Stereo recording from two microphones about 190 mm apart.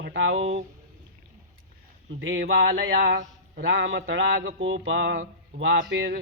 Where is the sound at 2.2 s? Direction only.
80° right.